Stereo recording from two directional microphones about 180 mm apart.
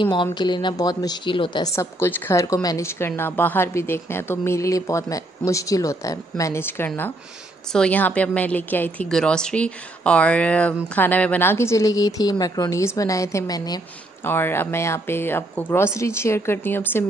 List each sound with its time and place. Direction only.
0.0 s a woman's voice: 25° left (ahead or behind)